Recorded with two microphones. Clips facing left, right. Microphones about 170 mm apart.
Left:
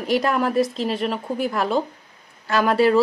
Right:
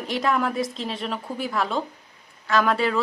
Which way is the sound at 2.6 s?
5° left (ahead or behind).